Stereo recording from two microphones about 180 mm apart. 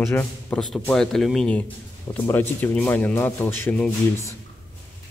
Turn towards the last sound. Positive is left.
turn(degrees=10)  # may be behind; listen again after turning